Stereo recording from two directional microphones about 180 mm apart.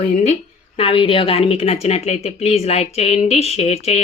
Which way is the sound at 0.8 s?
30° left (ahead or behind).